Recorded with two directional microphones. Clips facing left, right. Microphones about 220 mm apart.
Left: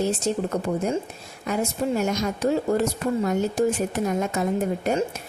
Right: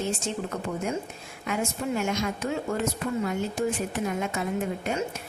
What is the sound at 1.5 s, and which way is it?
Speech, 40° left (ahead or behind).